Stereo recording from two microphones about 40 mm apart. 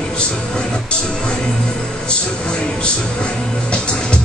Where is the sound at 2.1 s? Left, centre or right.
Left.